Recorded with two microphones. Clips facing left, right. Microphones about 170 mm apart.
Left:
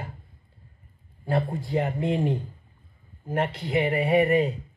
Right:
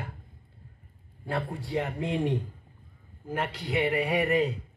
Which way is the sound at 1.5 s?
35° left (ahead or behind).